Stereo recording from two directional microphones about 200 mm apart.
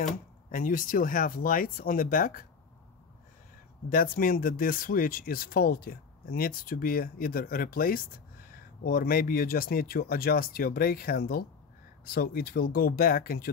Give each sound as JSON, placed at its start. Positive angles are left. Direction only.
{"t": 0.0, "sound": "speech", "side_deg": 40}
{"t": 3.9, "sound": "speech", "side_deg": 45}